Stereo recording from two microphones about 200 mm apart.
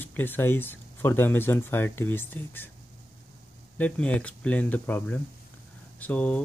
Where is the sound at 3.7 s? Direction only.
5° left (ahead or behind).